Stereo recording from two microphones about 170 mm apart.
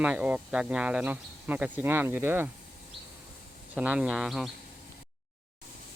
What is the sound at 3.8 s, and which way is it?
Speech, 5° right (ahead or behind).